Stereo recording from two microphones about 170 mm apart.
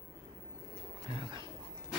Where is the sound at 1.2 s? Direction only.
30° right (ahead or behind).